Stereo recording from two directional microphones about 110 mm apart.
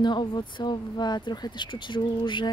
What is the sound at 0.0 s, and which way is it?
Speech, 45° left (ahead or behind).